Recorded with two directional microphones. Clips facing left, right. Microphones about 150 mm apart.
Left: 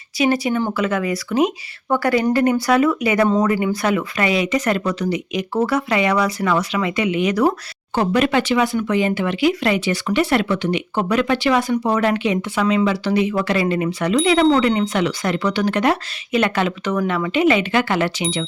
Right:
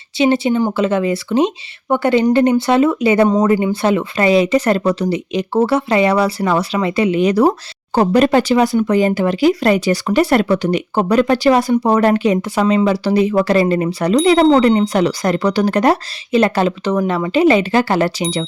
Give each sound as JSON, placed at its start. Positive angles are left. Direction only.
{"t": 0.2, "sound": "speech", "side_deg": -25}
{"t": 3.2, "sound": "speech", "side_deg": -15}
{"t": 3.5, "sound": "speech", "side_deg": -30}